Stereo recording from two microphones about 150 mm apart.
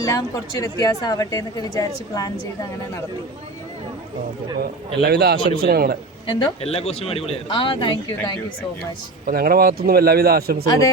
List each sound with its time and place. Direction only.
0.1 s a woman's voice: 20° left (ahead or behind)
4.6 s speech: 90° right
6.2 s speech: 30° left (ahead or behind)
6.7 s speech: 45° left (ahead or behind)
9.2 s speech: 90° right